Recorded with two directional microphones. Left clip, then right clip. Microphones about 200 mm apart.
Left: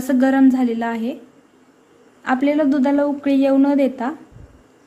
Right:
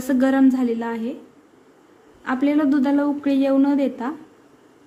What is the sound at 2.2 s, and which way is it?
A woman's voice, 10° left (ahead or behind).